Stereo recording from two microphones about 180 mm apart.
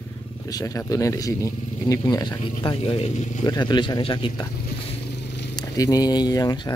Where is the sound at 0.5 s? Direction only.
20° left (ahead or behind).